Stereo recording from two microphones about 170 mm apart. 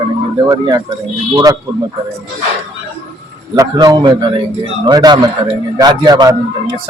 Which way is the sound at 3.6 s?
25° right (ahead or behind).